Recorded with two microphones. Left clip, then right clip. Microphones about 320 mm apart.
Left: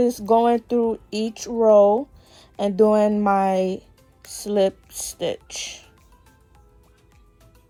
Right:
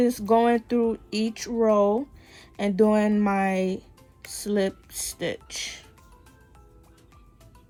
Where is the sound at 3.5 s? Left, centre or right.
Centre.